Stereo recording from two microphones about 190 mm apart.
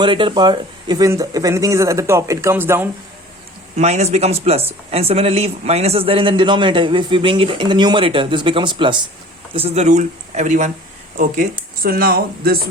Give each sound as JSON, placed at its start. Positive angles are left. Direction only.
{"t": 0.0, "sound": "speech", "side_deg": -25}
{"t": 3.8, "sound": "speech", "side_deg": -35}
{"t": 11.8, "sound": "speech", "side_deg": -50}